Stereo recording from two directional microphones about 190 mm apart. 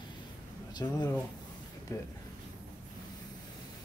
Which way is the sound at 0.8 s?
15° left (ahead or behind).